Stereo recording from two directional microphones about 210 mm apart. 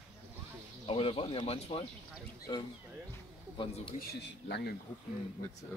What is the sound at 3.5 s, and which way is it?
Speech, 25° left (ahead or behind).